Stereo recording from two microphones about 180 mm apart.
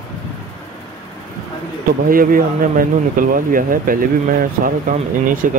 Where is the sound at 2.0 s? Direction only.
50° right (ahead or behind).